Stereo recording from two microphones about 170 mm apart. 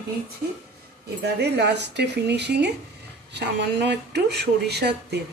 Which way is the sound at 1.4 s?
75° right (ahead or behind).